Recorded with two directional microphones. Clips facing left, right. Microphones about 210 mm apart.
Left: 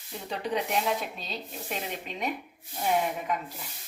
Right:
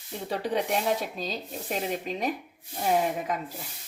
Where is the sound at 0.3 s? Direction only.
40° right (ahead or behind).